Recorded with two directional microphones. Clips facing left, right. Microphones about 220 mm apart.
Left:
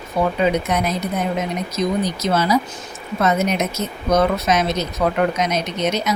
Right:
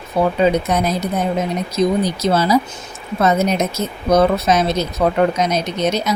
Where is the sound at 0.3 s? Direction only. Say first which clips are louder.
Right 3 dB; 35° right (ahead or behind).